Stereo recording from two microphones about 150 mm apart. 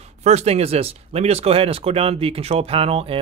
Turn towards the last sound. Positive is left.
turn(degrees=-40)  # may be behind; listen again after turning